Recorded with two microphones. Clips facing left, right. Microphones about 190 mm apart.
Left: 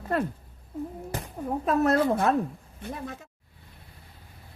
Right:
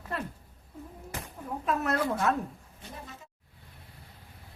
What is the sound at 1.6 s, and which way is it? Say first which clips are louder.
Speech: left 6 dB; 35° left (ahead or behind).